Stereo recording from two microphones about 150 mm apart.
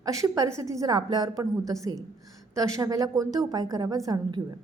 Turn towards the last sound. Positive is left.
turn(degrees=-25)  # may be behind; listen again after turning